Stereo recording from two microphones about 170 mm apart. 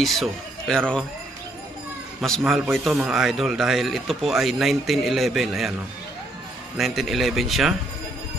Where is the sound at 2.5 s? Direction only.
Centre (ahead or behind).